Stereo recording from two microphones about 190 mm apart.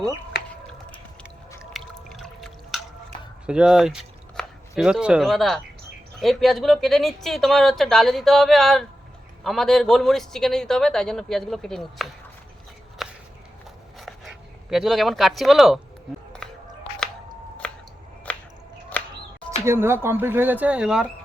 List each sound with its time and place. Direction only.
0.3 s a sound: 60° left (ahead or behind)
1.7 s drip: centre (ahead or behind)
3.4 s speech: 5° right (ahead or behind)
13.0 s walk: centre (ahead or behind)
14.0 s speech: centre (ahead or behind)
16.4 s music: 5° left (ahead or behind)
19.6 s speech: 10° right (ahead or behind)